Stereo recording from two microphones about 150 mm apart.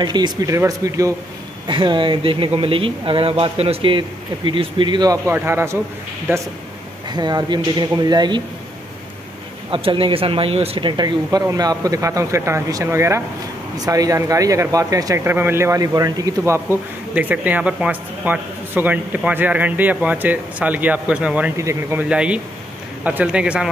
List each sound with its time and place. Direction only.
0.0 s speech: 30° right (ahead or behind)
1.7 s speech: 30° right (ahead or behind); by 5.8 s 15° right (ahead or behind)
7.1 s speech: 30° right (ahead or behind)
9.7 s speech: 35° right (ahead or behind); by 21.5 s 10° right (ahead or behind)
21.5 s speech: 20° right (ahead or behind)
22.1 s speech: 10° right (ahead or behind)